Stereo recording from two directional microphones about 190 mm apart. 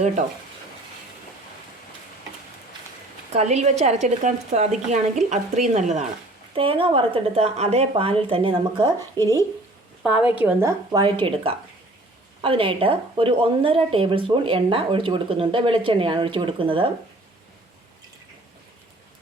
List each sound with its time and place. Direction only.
3.3 s a woman's voice: 35° right (ahead or behind)
9.1 s speech: 15° left (ahead or behind)
10.0 s a woman's voice: 5° right (ahead or behind); by 16.9 s 25° right (ahead or behind)